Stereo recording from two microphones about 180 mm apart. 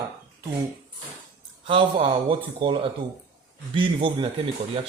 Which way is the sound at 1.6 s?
30° right (ahead or behind).